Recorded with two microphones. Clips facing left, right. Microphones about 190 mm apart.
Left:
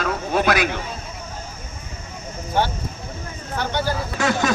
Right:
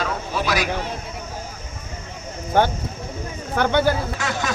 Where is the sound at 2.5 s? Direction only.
50° right (ahead or behind).